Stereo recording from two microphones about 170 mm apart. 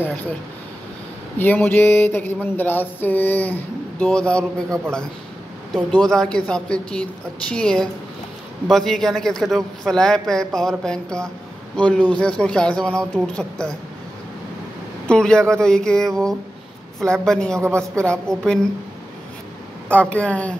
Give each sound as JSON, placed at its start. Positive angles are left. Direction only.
{"t": 1.4, "sound": "a sound", "side_deg": 10}
{"t": 5.7, "sound": "speech", "side_deg": 5}
{"t": 15.0, "sound": "speech", "side_deg": 5}
{"t": 17.6, "sound": "a woman's voice", "side_deg": -15}
{"t": 18.3, "sound": "speech", "side_deg": 5}
{"t": 19.9, "sound": "a sound", "side_deg": 10}